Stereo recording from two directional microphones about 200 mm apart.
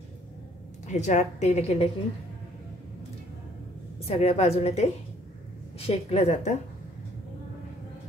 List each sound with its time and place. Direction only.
0.8 s a woman's voice: 35° left (ahead or behind)
4.1 s a woman's voice: 35° left (ahead or behind)